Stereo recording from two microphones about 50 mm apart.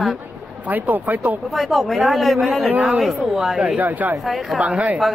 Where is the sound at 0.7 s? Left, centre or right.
Right.